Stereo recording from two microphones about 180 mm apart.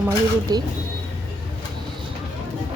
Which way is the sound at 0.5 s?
20° right (ahead or behind).